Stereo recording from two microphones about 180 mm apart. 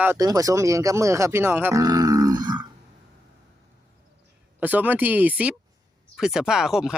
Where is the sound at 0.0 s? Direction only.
15° right (ahead or behind).